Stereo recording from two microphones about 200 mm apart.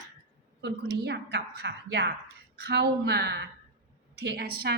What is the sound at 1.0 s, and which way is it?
A woman's voice, 55° right (ahead or behind).